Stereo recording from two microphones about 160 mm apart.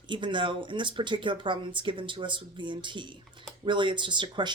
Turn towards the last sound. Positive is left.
turn(degrees=-30)  # may be behind; listen again after turning